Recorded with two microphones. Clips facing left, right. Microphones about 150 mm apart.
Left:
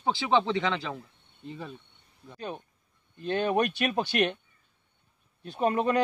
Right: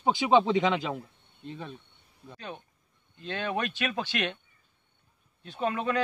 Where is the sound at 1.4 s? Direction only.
Centre (ahead or behind).